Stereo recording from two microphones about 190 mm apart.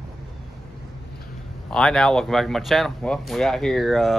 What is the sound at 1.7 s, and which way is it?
Speech, 5° left (ahead or behind).